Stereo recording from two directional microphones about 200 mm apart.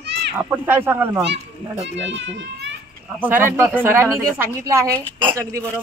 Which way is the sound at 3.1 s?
10° right (ahead or behind).